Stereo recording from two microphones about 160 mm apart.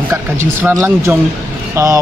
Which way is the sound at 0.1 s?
15° right (ahead or behind).